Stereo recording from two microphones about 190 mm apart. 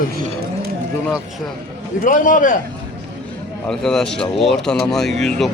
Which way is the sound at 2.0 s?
45° left (ahead or behind).